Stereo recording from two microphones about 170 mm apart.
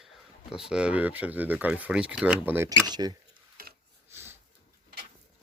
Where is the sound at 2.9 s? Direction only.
25° right (ahead or behind).